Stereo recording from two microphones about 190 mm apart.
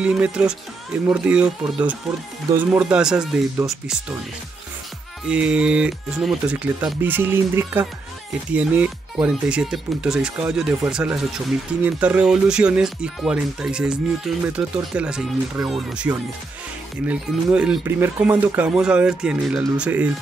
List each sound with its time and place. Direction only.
0.0 s speech: 5° right (ahead or behind)
5.2 s speech: 5° right (ahead or behind)